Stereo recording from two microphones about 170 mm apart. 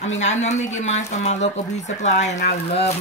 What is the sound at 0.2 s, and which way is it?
Speech, 40° left (ahead or behind).